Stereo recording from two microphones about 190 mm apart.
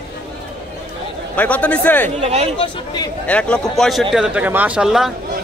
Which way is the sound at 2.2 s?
35° right (ahead or behind).